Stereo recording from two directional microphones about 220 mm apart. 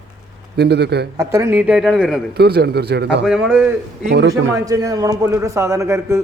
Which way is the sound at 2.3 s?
45° right (ahead or behind).